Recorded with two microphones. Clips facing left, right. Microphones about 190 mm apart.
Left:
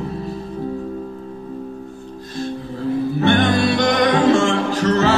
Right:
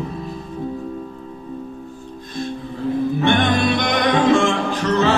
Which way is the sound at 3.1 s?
40° left (ahead or behind).